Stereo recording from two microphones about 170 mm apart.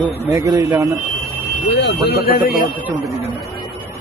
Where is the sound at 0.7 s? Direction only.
20° right (ahead or behind).